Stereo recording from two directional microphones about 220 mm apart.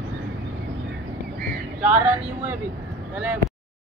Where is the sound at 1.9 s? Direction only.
10° right (ahead or behind).